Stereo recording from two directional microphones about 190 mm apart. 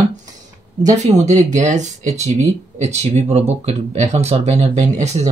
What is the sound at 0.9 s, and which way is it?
Speech, 35° right (ahead or behind).